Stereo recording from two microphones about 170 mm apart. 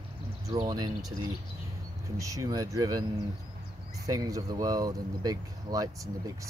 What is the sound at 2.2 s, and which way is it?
Speech, 20° right (ahead or behind).